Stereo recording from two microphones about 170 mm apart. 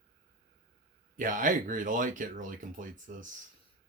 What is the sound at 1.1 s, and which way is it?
Speech, 50° right (ahead or behind).